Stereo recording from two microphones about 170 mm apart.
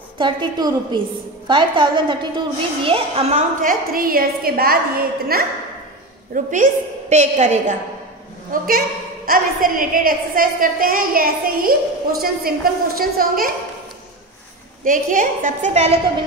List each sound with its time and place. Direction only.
0.2 s a woman's voice: 25° right (ahead or behind)
3.6 s a woman's voice: 55° right (ahead or behind)
6.3 s a woman's voice: 50° right (ahead or behind)
8.5 s a woman's voice: 60° right (ahead or behind)
14.9 s a woman's voice: 50° right (ahead or behind)